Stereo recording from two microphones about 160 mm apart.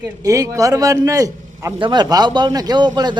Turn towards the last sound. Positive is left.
turn(degrees=-25)  # may be behind; listen again after turning